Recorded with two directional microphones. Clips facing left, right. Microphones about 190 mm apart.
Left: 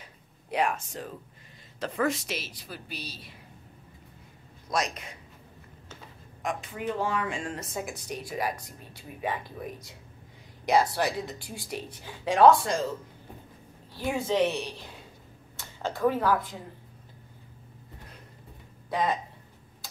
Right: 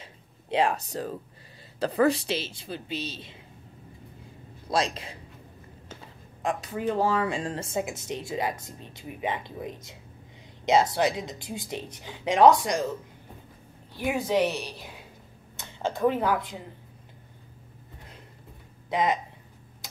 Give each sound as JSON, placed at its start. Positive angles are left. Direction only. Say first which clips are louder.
{"t": 0.0, "sound": "a sound", "louder": "right 3 dB", "side_deg": -25}
{"t": 1.8, "sound": "speech", "louder": "right 6 dB", "side_deg": -35}
{"t": 4.6, "sound": "speech", "louder": "right 3 dB", "side_deg": -30}
{"t": 6.4, "sound": "speech", "louder": "right 4 dB", "side_deg": -35}
{"t": 14.1, "sound": "speech", "louder": "right 2 dB", "side_deg": -15}
{"t": 14.4, "sound": "a woman's voice", "louder": "left 1 dB", "side_deg": -5}
{"t": 15.5, "sound": "a woman's voice", "louder": "right 3 dB", "side_deg": -20}
{"t": 18.9, "sound": "speech", "louder": "right 2 dB", "side_deg": -20}